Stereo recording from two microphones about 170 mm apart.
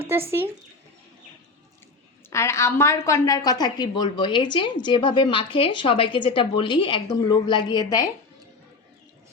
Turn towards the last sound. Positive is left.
turn(degrees=25)  # may be behind; listen again after turning